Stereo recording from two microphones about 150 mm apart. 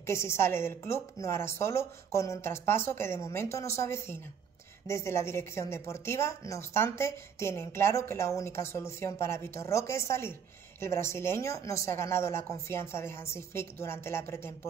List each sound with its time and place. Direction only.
0.0 s a woman's voice: 20° left (ahead or behind)